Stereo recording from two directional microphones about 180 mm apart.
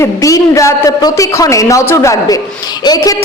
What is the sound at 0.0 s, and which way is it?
A woman's voice, 20° left (ahead or behind).